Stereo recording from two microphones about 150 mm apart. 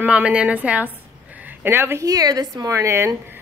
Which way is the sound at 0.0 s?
5° right (ahead or behind).